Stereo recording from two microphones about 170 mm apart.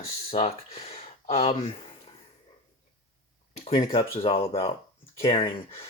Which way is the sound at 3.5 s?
40° left (ahead or behind).